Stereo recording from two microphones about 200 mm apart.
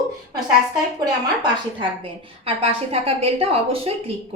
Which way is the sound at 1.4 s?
25° right (ahead or behind).